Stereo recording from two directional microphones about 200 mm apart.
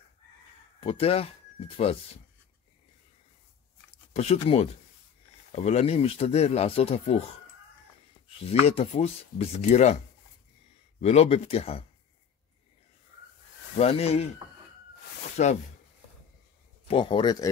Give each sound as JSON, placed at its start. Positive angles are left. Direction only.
{"t": 0.7, "sound": "speech", "side_deg": 30}
{"t": 4.1, "sound": "speech", "side_deg": 30}
{"t": 8.4, "sound": "speech", "side_deg": 30}
{"t": 11.0, "sound": "speech", "side_deg": 35}
{"t": 13.7, "sound": "speech", "side_deg": 30}
{"t": 15.4, "sound": "speech", "side_deg": 35}
{"t": 16.8, "sound": "speech", "side_deg": 25}